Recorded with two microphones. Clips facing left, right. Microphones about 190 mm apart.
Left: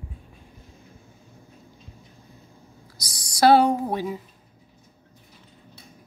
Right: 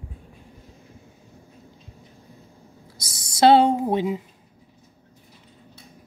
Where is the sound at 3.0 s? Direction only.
25° right (ahead or behind).